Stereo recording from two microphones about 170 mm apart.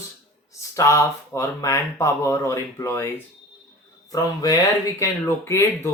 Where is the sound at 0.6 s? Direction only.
15° left (ahead or behind).